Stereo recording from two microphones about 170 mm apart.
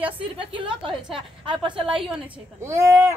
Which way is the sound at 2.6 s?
15° right (ahead or behind).